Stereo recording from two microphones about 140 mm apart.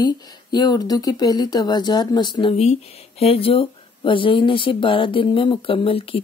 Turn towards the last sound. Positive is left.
turn(degrees=40)  # may be behind; listen again after turning